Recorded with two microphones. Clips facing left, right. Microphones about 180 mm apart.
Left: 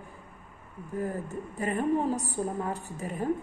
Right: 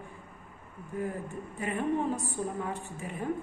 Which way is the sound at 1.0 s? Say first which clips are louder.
Left 2 dB; 40° left (ahead or behind).